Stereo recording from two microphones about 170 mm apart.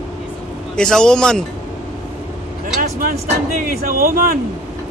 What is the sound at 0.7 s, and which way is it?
Speech, 5° left (ahead or behind).